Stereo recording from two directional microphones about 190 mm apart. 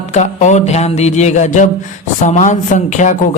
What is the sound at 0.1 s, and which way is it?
A man's voice, 35° left (ahead or behind).